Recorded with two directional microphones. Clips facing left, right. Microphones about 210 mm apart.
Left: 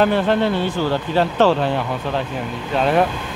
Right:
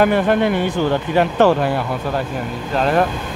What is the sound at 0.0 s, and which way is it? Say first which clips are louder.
Speech: right 2 dB; 10° right (ahead or behind).